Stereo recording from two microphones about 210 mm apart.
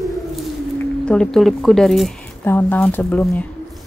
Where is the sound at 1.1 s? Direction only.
5° left (ahead or behind).